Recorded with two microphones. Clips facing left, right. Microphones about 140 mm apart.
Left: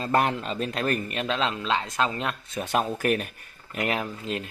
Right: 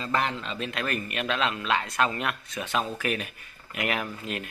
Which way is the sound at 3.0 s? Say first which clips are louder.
Left 5 dB; 45° left (ahead or behind).